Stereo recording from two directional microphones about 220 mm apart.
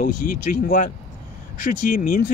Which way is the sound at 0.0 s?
35° left (ahead or behind).